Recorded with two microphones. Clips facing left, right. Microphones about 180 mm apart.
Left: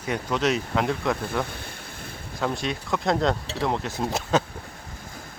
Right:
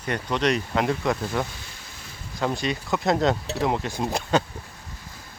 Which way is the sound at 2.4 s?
Centre (ahead or behind).